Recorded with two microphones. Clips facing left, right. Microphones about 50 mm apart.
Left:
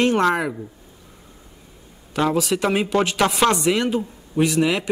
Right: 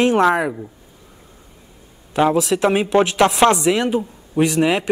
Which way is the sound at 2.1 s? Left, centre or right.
Centre.